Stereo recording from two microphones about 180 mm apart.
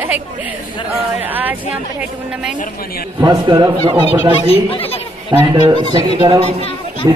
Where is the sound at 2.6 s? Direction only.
55° left (ahead or behind).